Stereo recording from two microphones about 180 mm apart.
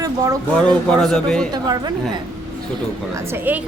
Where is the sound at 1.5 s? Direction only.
20° right (ahead or behind).